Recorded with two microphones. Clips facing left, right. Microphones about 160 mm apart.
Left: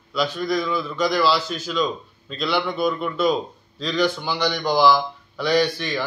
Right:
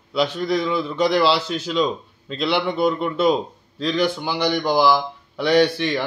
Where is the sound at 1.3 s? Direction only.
65° right (ahead or behind).